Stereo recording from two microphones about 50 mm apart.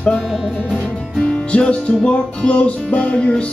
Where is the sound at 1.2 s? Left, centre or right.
Left.